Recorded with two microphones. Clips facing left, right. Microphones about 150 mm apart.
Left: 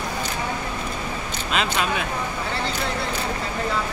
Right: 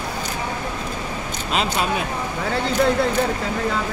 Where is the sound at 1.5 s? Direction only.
35° right (ahead or behind).